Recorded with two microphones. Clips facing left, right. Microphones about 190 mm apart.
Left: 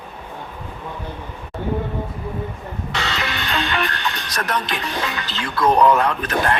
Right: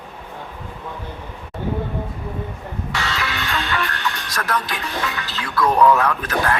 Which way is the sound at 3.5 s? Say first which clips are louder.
Left 3 dB; 20° left (ahead or behind).